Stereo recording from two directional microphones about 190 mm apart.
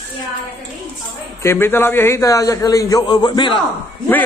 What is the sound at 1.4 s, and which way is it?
A man's voice, 10° left (ahead or behind).